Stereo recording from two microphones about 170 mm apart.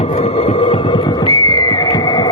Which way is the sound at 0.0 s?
40° left (ahead or behind).